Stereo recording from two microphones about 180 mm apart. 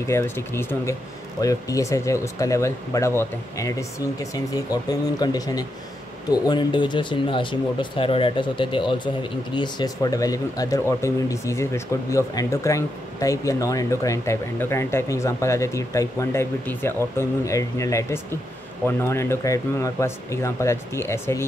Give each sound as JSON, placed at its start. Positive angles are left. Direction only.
{"t": 0.1, "sound": "speech", "side_deg": 15}